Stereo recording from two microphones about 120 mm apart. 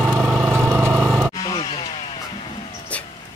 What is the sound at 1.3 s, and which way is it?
Music, 35° left (ahead or behind).